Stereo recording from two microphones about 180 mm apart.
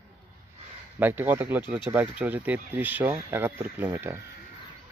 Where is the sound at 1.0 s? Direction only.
10° right (ahead or behind).